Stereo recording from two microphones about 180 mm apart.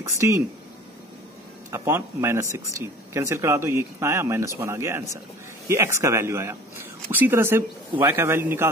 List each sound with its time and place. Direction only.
0.0 s speech: 15° right (ahead or behind)
1.7 s speech: 15° right (ahead or behind)